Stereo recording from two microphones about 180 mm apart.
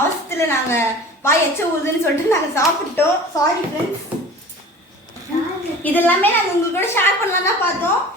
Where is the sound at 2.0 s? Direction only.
15° left (ahead or behind).